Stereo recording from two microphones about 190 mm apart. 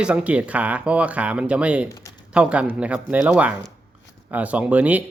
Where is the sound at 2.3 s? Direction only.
5° right (ahead or behind).